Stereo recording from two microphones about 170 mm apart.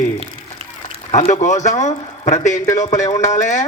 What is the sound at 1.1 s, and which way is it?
A man's voice, 45° left (ahead or behind).